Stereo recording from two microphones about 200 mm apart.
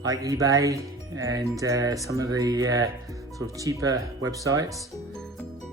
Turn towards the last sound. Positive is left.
turn(degrees=-15)  # may be behind; listen again after turning